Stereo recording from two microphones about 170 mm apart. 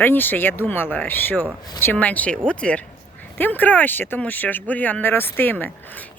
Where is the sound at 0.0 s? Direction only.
10° left (ahead or behind).